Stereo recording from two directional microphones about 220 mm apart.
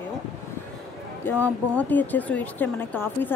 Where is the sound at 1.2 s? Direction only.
5° left (ahead or behind).